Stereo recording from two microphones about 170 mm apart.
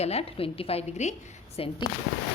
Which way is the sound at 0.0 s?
35° left (ahead or behind).